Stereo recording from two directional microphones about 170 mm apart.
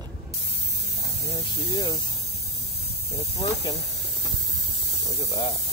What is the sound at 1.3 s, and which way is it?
Speech, 25° left (ahead or behind).